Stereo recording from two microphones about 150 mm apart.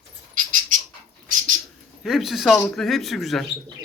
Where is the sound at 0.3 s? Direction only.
60° right (ahead or behind).